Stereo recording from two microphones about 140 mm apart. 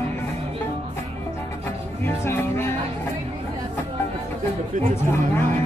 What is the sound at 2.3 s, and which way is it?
Music, 15° left (ahead or behind).